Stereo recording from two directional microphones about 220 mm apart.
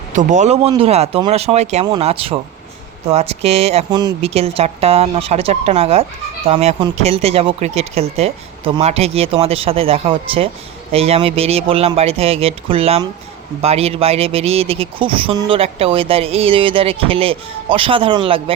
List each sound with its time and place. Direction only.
0.1 s speech: 35° right (ahead or behind)